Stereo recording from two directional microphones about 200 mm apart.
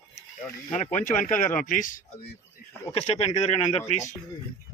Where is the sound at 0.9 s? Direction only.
40° left (ahead or behind).